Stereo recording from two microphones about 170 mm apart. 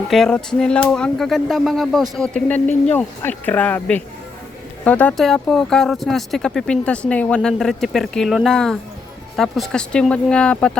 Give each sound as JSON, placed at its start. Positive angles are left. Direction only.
{"t": 0.1, "sound": "speech", "side_deg": 5}